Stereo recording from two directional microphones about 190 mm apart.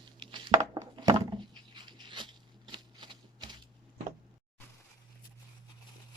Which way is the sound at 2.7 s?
25° right (ahead or behind).